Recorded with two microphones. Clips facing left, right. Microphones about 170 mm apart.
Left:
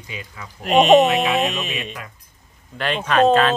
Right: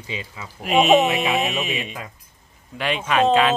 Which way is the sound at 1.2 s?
15° right (ahead or behind).